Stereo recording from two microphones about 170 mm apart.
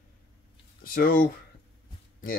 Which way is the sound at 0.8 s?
60° left (ahead or behind).